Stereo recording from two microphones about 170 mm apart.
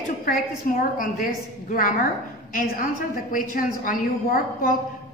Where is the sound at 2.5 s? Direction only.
60° left (ahead or behind).